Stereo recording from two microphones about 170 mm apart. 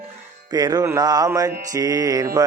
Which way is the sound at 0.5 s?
20° right (ahead or behind).